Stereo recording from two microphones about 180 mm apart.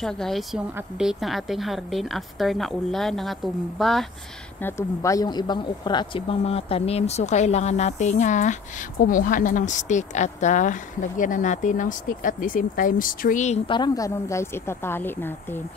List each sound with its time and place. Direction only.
0.0 s a woman's voice: 5° left (ahead or behind)
4.6 s speech: 15° left (ahead or behind); by 13.6 s 45° left (ahead or behind)
13.7 s a woman's voice: 25° left (ahead or behind)